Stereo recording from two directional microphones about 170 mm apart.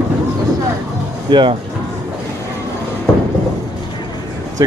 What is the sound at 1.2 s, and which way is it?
Speech, 30° right (ahead or behind).